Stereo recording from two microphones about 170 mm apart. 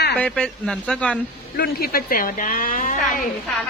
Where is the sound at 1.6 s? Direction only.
60° left (ahead or behind).